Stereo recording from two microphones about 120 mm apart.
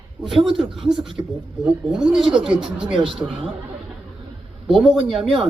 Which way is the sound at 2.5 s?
10° right (ahead or behind).